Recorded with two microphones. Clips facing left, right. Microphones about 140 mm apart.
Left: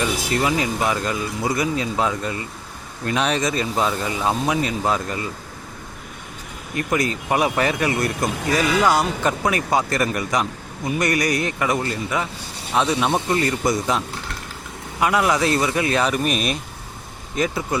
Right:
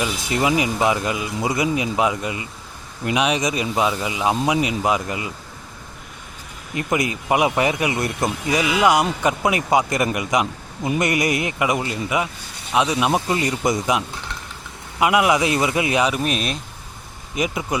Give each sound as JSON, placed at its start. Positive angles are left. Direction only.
{"t": 0.3, "sound": "speech", "side_deg": -20}
{"t": 6.7, "sound": "speech", "side_deg": -20}
{"t": 15.0, "sound": "speech", "side_deg": -15}
{"t": 16.2, "sound": "speech", "side_deg": 0}
{"t": 17.3, "sound": "speech", "side_deg": -15}